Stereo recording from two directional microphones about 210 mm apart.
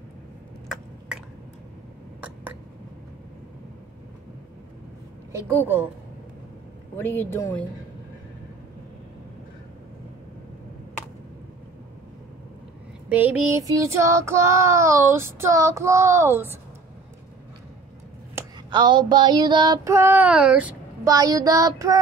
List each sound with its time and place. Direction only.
7.0 s speech: 10° left (ahead or behind)
13.1 s child singing: 10° right (ahead or behind)
18.3 s female singing: 20° right (ahead or behind)